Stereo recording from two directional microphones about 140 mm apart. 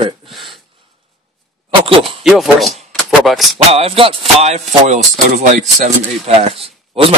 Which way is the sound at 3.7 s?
45° right (ahead or behind).